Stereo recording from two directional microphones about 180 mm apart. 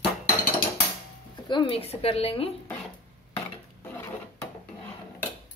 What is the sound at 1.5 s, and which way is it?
A woman's voice, 30° left (ahead or behind).